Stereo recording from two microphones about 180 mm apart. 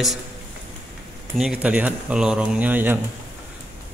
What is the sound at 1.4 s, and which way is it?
Speech, 5° right (ahead or behind).